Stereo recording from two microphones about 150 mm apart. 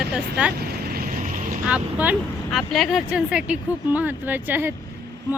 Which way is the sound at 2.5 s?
Centre (ahead or behind).